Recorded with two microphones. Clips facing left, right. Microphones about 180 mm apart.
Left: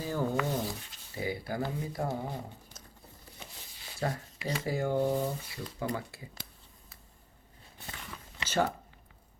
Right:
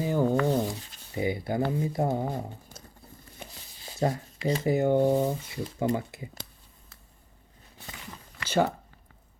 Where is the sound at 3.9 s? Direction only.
25° right (ahead or behind).